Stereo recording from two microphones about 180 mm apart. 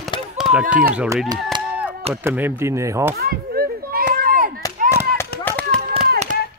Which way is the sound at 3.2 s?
55° right (ahead or behind).